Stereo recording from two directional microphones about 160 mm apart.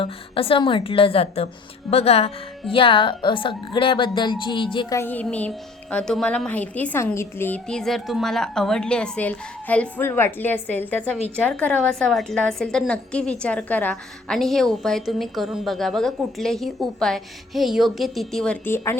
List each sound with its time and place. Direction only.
0.0 s speech: 35° left (ahead or behind)
4.9 s a woman's voice: 10° left (ahead or behind)